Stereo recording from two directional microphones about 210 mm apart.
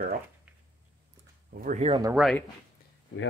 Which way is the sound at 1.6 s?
35° right (ahead or behind).